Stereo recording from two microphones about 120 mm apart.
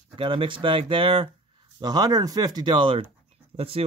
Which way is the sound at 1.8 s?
35° right (ahead or behind).